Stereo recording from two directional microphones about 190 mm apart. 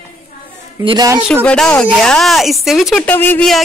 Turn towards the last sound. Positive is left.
turn(degrees=5)  # may be behind; listen again after turning